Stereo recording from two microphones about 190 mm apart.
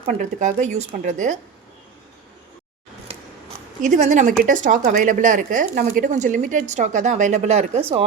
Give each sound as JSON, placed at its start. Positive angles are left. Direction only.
{"t": 0.2, "sound": "speech", "side_deg": -40}
{"t": 3.1, "sound": "scissors", "side_deg": -30}
{"t": 3.8, "sound": "speech", "side_deg": -40}